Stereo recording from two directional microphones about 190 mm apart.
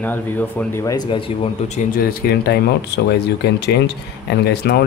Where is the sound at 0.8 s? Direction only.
25° left (ahead or behind).